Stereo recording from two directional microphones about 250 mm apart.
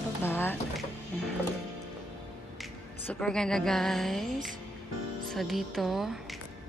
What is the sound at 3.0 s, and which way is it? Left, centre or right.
Music, centre.